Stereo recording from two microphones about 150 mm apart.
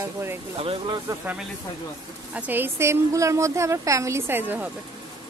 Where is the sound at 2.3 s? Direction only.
10° right (ahead or behind).